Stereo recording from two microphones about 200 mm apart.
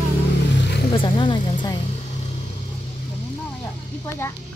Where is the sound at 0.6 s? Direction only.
55° left (ahead or behind).